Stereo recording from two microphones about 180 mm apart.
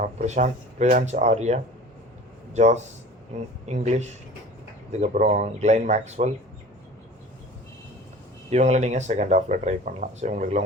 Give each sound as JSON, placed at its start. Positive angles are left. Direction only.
{"t": 0.0, "sound": "speech", "side_deg": -40}
{"t": 8.4, "sound": "speech", "side_deg": -40}